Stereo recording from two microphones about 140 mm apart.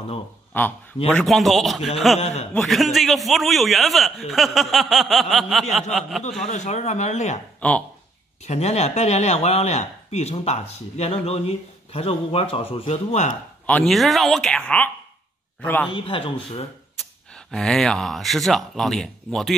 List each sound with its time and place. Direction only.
0.5 s a man's voice: 15° left (ahead or behind)
2.1 s speech: 50° left (ahead or behind)
2.5 s a man's voice: centre (ahead or behind)
6.4 s speech: 60° left (ahead or behind)
7.6 s a man's voice: 10° left (ahead or behind)
8.5 s speech: 50° left (ahead or behind)
13.8 s a man's voice: centre (ahead or behind)
15.9 s a man's voice: 40° left (ahead or behind)
17.5 s a man's voice: 5° left (ahead or behind)